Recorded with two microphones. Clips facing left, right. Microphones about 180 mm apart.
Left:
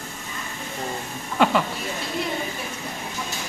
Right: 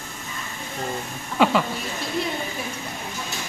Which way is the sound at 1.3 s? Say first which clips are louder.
Right 1 dB; centre (ahead or behind).